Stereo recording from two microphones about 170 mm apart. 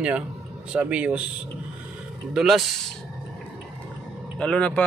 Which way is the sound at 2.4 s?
Centre (ahead or behind).